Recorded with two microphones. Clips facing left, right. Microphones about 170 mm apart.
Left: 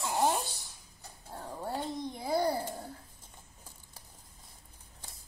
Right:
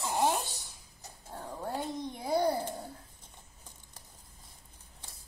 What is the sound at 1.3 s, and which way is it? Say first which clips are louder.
Dog: even; 10° left (ahead or behind).